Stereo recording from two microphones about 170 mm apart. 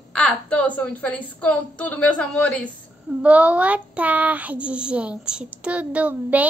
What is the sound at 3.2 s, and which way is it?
Speech, 10° right (ahead or behind).